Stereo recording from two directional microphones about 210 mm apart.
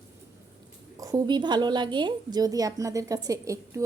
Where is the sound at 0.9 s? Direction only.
15° right (ahead or behind).